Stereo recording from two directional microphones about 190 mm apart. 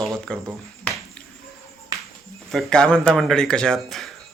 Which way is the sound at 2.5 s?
Centre (ahead or behind).